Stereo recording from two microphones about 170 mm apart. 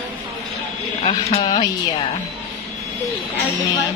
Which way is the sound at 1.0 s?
40° left (ahead or behind).